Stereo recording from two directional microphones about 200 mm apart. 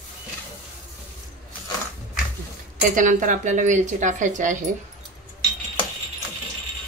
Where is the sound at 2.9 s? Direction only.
40° right (ahead or behind).